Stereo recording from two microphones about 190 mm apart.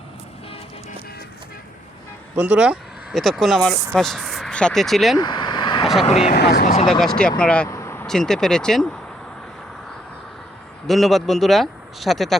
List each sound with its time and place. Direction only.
2.3 s speech: 5° right (ahead or behind)
5.1 s vehicle: 25° left (ahead or behind)
5.8 s vehicle: centre (ahead or behind)
6.1 s speech: 35° left (ahead or behind)
6.3 s speech: 55° left (ahead or behind)
7.0 s speech: 5° left (ahead or behind)
8.0 s speech: centre (ahead or behind)
10.8 s speech: centre (ahead or behind)